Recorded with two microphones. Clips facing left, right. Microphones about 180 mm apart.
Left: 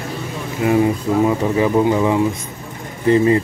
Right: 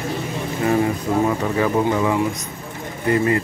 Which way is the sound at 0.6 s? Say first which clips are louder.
Left 4 dB; 15° left (ahead or behind).